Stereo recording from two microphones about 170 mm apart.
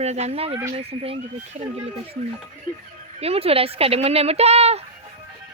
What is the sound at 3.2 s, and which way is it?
Speech, 35° right (ahead or behind).